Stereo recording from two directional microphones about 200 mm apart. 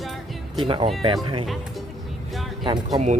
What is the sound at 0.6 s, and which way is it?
Speech, 25° right (ahead or behind).